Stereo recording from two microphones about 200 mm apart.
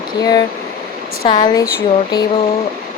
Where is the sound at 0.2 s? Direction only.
20° left (ahead or behind).